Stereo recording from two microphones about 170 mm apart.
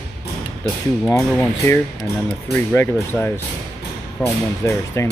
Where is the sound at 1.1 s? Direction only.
5° left (ahead or behind).